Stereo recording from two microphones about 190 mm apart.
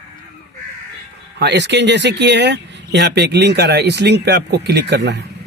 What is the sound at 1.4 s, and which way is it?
Speech, 65° right (ahead or behind).